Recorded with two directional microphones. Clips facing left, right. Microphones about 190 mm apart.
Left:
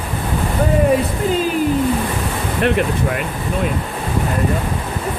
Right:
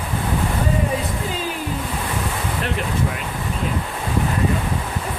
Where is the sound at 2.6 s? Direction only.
65° left (ahead or behind).